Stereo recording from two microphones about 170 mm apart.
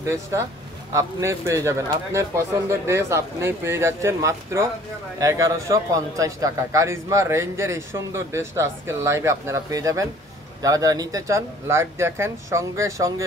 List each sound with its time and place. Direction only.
0.9 s a man's voice: 15° right (ahead or behind)